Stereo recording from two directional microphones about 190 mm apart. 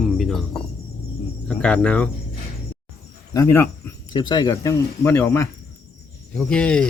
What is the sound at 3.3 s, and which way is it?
Speech, 15° left (ahead or behind).